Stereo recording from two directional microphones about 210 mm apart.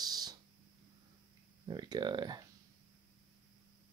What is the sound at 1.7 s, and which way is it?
Speech, 20° right (ahead or behind).